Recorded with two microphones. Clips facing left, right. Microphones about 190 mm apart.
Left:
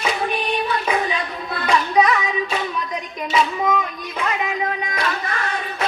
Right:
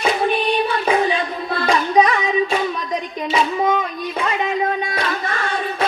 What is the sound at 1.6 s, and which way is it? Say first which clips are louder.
Child singing: right 1 dB; 30° right (ahead or behind).